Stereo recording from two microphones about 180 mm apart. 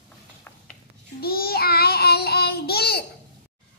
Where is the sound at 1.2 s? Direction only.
55° left (ahead or behind).